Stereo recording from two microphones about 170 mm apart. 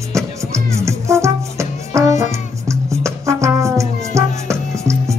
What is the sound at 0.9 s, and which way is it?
Music, 15° right (ahead or behind).